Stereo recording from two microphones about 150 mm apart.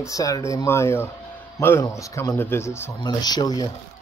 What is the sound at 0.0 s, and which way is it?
Speech, 20° left (ahead or behind).